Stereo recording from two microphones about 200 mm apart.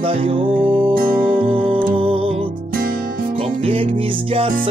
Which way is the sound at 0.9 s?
45° right (ahead or behind).